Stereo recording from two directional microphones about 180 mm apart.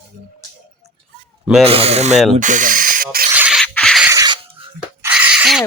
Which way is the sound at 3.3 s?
5° right (ahead or behind).